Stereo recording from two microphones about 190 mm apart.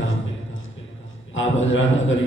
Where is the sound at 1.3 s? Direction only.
90° left.